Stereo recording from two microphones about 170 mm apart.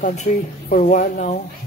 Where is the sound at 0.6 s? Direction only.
50° left (ahead or behind).